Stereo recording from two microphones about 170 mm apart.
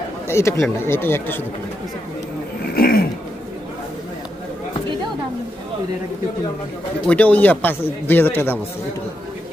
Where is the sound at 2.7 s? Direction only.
60° left (ahead or behind).